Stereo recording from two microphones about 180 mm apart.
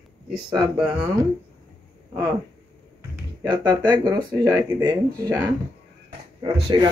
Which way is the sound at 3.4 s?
25° right (ahead or behind).